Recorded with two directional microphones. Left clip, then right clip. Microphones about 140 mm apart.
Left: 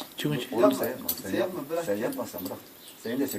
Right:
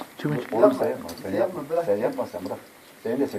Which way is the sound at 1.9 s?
20° left (ahead or behind).